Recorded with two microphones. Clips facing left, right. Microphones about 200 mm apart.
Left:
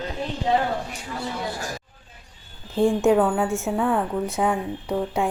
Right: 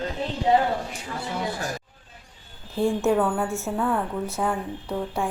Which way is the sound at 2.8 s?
15° left (ahead or behind).